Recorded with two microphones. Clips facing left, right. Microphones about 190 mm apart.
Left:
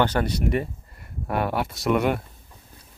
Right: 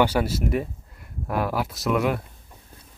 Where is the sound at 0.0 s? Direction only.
5° right (ahead or behind).